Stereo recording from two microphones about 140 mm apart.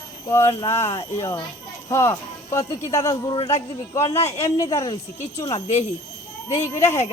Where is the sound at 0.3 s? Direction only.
20° left (ahead or behind).